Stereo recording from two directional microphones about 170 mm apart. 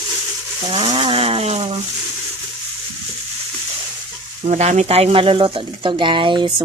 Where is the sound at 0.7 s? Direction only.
30° right (ahead or behind).